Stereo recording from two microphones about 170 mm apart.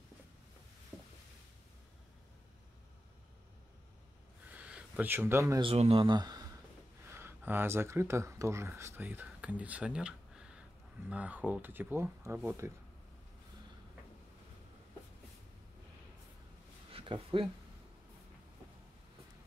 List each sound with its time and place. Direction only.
4.5 s a sound: 10° right (ahead or behind)
5.6 s speech: 35° right (ahead or behind); by 12.7 s 15° right (ahead or behind)
16.9 s speech: 30° right (ahead or behind)